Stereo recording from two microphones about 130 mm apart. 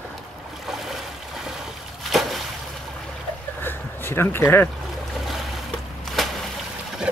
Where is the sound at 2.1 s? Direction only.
Centre (ahead or behind).